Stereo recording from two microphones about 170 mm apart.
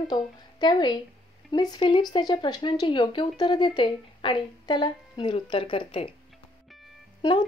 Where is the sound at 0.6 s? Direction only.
25° left (ahead or behind).